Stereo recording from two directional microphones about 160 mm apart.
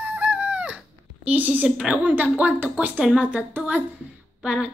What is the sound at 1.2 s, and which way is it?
Speech, 10° right (ahead or behind).